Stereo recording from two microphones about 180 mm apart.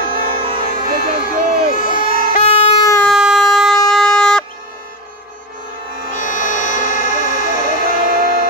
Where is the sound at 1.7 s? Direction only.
50° left (ahead or behind).